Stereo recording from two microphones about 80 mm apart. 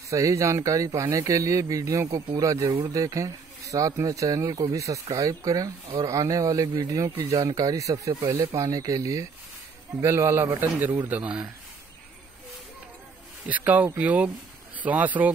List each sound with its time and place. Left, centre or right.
0.1 s a man's voice: right; by 11.4 s centre
13.5 s a man's voice: centre